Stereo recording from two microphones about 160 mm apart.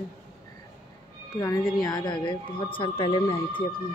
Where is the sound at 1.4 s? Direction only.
20° left (ahead or behind).